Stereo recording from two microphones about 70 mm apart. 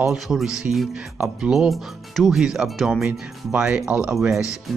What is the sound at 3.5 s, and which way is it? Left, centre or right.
Speech, centre.